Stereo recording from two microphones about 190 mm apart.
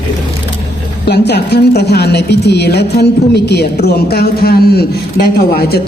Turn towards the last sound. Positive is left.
turn(degrees=55)  # may be behind; listen again after turning